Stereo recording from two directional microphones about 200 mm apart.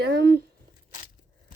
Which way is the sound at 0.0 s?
55° right (ahead or behind).